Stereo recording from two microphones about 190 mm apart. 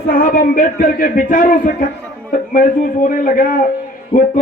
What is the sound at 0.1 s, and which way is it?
Speech, 45° left (ahead or behind).